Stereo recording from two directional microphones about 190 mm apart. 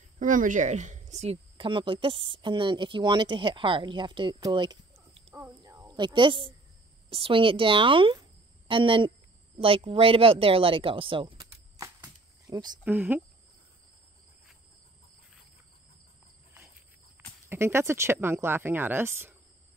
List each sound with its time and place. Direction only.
0.2 s speech: 45° right (ahead or behind); by 4.7 s 25° right (ahead or behind)
5.3 s a woman's voice: 10° right (ahead or behind)
12.8 s speech: 10° right (ahead or behind)
17.5 s speech: 10° right (ahead or behind)